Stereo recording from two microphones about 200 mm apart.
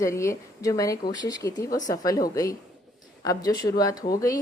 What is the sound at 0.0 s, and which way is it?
A woman's voice, 15° left (ahead or behind).